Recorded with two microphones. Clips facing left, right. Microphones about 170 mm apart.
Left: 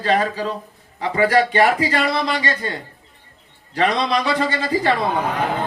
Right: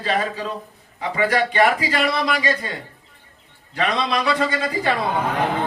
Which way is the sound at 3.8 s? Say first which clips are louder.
Left 3 dB; 30° left (ahead or behind).